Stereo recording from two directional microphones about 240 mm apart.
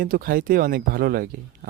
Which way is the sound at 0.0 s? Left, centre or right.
Right.